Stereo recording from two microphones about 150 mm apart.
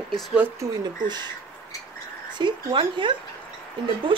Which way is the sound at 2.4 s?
30° right (ahead or behind).